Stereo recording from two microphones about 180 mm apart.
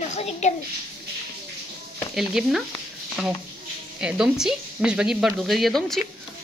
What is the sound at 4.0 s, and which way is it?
A woman's voice, 5° right (ahead or behind).